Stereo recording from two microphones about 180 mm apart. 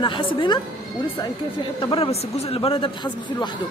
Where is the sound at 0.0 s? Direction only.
25° left (ahead or behind).